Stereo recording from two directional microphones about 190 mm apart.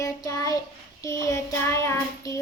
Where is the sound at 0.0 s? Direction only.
20° left (ahead or behind).